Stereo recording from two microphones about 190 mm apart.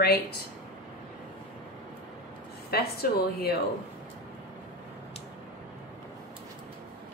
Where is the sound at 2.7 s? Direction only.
55° left (ahead or behind).